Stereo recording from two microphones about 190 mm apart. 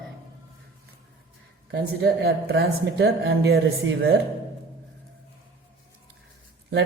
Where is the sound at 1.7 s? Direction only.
60° right (ahead or behind).